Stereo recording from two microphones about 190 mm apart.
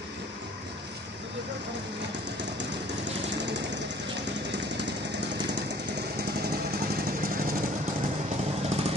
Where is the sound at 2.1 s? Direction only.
70° right (ahead or behind); by 7.5 s 50° right (ahead or behind).